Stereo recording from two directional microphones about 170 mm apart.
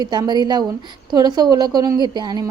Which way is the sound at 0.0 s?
25° right (ahead or behind).